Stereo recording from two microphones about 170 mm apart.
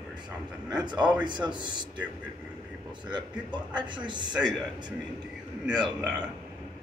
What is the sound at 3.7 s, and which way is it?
Speech, 25° right (ahead or behind).